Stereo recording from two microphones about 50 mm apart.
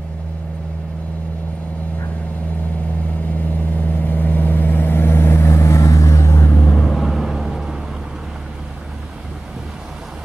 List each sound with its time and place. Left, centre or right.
3.7 s vehicle: left
6.4 s vehicle: left
6.9 s vehicle: centre